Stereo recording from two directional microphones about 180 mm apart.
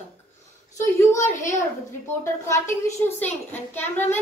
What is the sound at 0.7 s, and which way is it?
A child's voice, 15° left (ahead or behind).